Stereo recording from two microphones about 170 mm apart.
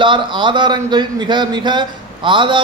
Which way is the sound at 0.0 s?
30° right (ahead or behind).